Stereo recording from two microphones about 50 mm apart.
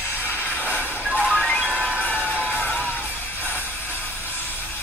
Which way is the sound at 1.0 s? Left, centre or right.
Centre.